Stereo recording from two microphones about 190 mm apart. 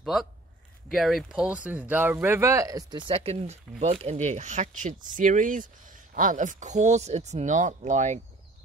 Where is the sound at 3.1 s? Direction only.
30° right (ahead or behind).